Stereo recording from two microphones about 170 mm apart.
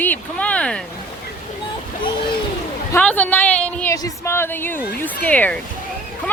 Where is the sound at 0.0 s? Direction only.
10° left (ahead or behind).